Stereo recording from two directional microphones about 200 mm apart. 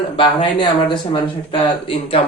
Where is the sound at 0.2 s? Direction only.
25° left (ahead or behind).